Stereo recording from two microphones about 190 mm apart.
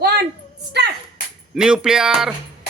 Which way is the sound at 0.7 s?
60° right (ahead or behind).